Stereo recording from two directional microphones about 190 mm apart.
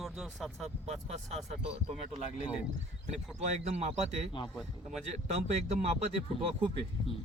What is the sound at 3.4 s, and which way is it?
Speech, 35° right (ahead or behind).